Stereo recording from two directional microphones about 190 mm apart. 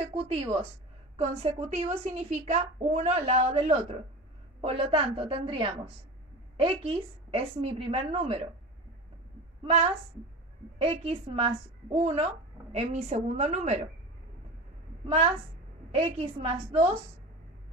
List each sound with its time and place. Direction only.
0.1 s a woman's voice: 30° right (ahead or behind)
10.8 s a woman's voice: 30° right (ahead or behind)
15.9 s a woman's voice: 30° right (ahead or behind)